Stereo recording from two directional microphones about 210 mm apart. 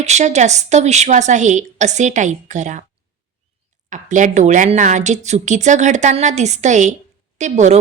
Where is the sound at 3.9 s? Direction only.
35° right (ahead or behind).